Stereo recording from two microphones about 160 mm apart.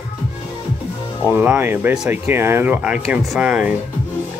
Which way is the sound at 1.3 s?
10° right (ahead or behind).